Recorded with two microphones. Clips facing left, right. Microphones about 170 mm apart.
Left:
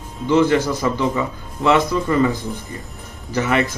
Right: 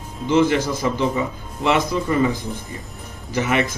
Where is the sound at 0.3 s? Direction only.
15° right (ahead or behind).